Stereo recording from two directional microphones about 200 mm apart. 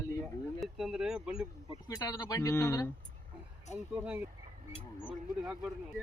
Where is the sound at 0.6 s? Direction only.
Centre (ahead or behind).